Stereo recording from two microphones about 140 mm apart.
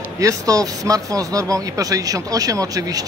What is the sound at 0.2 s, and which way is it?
Speech, 25° right (ahead or behind).